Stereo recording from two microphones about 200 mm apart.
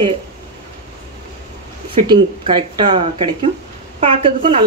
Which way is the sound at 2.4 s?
25° right (ahead or behind).